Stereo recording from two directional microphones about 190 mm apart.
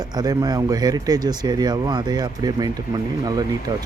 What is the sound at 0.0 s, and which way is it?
Speech, 20° right (ahead or behind).